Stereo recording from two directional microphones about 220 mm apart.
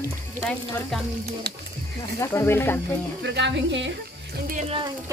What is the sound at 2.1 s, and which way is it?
Speech, 10° left (ahead or behind).